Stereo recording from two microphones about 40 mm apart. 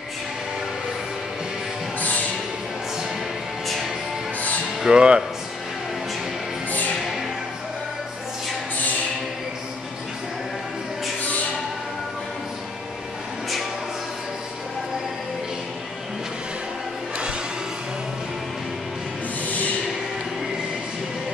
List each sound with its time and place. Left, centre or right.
2.0 s music: left
4.8 s speech: right
6.7 s music: left
19.4 s a sound: left